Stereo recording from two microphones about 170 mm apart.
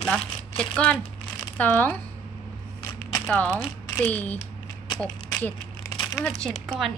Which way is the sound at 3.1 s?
10° left (ahead or behind).